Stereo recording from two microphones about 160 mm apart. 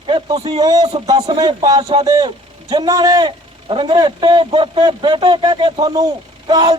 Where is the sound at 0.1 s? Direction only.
30° right (ahead or behind).